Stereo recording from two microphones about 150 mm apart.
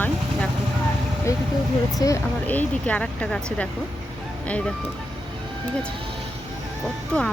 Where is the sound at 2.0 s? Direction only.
25° left (ahead or behind).